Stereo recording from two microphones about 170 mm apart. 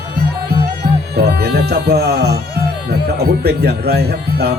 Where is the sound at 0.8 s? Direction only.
75° right (ahead or behind).